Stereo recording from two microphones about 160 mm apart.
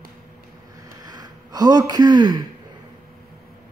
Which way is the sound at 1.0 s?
25° right (ahead or behind).